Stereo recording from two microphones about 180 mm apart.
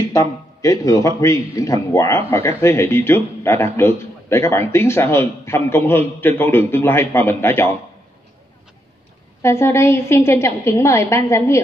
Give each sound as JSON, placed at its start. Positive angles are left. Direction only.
{"t": 0.1, "sound": "speech", "side_deg": 15}
{"t": 9.4, "sound": "speech", "side_deg": 15}